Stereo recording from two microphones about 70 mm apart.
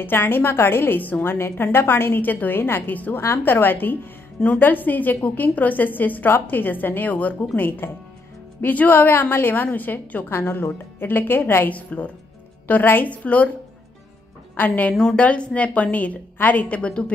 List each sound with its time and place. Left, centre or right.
0.0 s a woman's voice: left
15.0 s a woman's voice: centre